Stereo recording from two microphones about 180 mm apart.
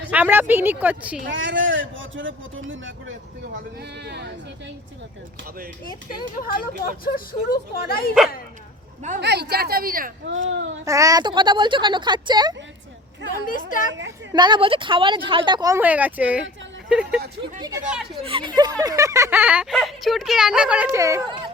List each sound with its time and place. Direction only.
0.1 s speech: 10° right (ahead or behind)
1.2 s a man's voice: 90° right
3.8 s speech: 65° right (ahead or behind)
6.3 s speech: 50° left (ahead or behind)
9.2 s speech: 65° right (ahead or behind)
10.2 s a man's voice: 90° right
10.8 s speech: 20° right (ahead or behind)
13.4 s speech: 50° left (ahead or behind)
14.3 s speech: 25° right (ahead or behind)
15.8 s speech: 10° right (ahead or behind)
17.6 s speech: 20° right (ahead or behind)
18.2 s speech: 30° right (ahead or behind)